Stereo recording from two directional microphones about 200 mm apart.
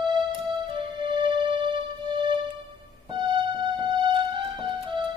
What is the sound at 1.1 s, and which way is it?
Music, 25° right (ahead or behind).